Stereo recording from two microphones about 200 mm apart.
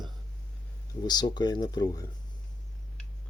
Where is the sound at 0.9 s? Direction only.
20° left (ahead or behind).